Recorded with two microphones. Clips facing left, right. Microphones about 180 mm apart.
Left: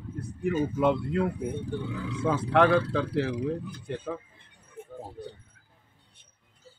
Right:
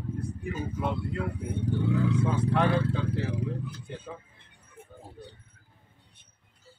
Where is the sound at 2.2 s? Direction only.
70° left (ahead or behind).